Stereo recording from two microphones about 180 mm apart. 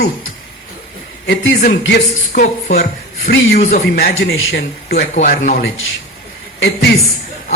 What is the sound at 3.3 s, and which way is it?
Speech, 75° left (ahead or behind).